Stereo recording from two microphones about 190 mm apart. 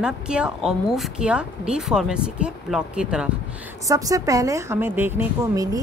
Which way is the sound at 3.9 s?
20° right (ahead or behind).